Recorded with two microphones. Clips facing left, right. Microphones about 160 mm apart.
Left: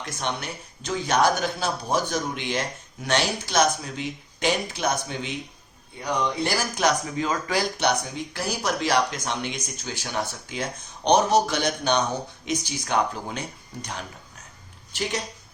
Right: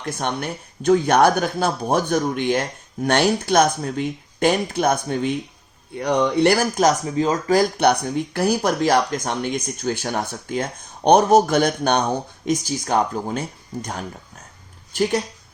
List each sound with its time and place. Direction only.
0.0 s speech: 50° right (ahead or behind)
6.0 s speech: 75° right (ahead or behind)
6.7 s speech: 40° right (ahead or behind)